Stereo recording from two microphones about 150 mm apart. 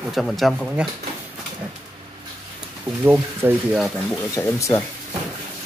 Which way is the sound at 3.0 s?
10° right (ahead or behind).